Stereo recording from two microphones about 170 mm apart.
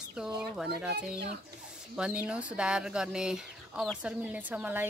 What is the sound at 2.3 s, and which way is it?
Speech, 5° right (ahead or behind).